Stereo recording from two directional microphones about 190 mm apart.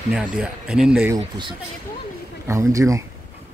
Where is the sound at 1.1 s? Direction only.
25° right (ahead or behind).